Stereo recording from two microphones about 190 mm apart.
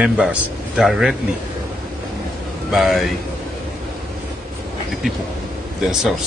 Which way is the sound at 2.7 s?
Centre (ahead or behind).